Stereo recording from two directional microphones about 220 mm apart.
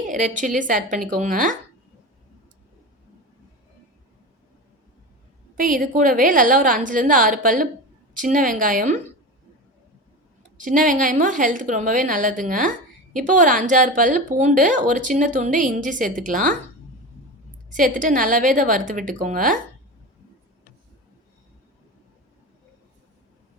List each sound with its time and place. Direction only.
0.1 s a woman's voice: 35° right (ahead or behind)
5.5 s a woman's voice: 35° right (ahead or behind)
10.6 s a woman's voice: 35° right (ahead or behind)
17.7 s a woman's voice: 35° right (ahead or behind)